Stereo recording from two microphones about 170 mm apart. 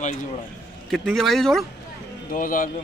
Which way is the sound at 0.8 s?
Centre (ahead or behind).